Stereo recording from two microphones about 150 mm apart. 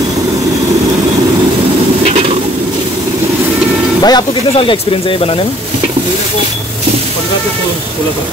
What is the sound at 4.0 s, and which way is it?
Speech, 25° left (ahead or behind).